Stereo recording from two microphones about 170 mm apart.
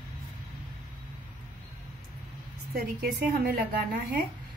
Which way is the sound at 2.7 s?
60° right (ahead or behind).